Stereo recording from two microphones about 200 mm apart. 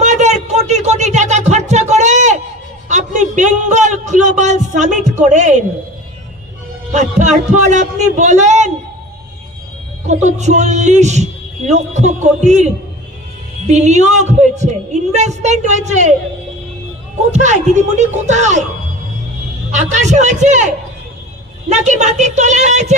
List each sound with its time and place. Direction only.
0.0 s a sound: 35° right (ahead or behind)
2.9 s a man's voice: 40° right (ahead or behind)
6.9 s a man's voice: 35° right (ahead or behind)
10.1 s a man's voice: 35° right (ahead or behind)
13.7 s a man's voice: 35° right (ahead or behind)
17.3 s a man's voice: 35° right (ahead or behind)
19.7 s a man's voice: 35° right (ahead or behind)
21.7 s a man's voice: 35° right (ahead or behind)